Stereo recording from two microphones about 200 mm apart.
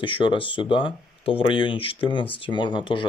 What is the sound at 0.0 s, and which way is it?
Speech, 25° left (ahead or behind).